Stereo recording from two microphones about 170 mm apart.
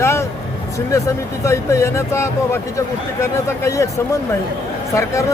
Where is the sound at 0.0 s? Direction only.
15° left (ahead or behind).